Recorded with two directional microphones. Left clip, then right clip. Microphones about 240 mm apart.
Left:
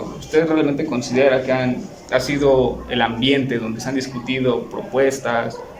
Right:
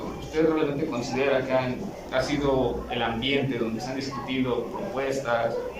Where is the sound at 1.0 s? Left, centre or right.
Left.